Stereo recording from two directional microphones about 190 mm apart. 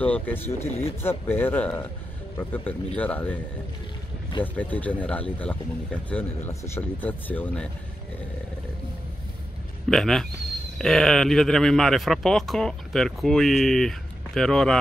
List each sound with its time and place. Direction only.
0.0 s speech: 10° left (ahead or behind)
4.6 s speech: 10° left (ahead or behind)
9.8 s speech: 5° left (ahead or behind)